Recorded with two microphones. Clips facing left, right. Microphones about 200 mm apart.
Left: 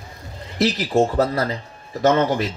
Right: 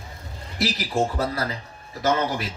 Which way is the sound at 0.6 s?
30° left (ahead or behind).